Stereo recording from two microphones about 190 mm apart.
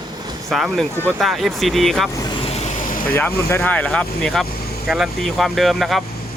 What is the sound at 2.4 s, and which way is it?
Vehicle, 35° left (ahead or behind).